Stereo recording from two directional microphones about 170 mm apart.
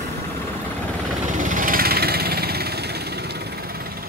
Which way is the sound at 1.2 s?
50° right (ahead or behind).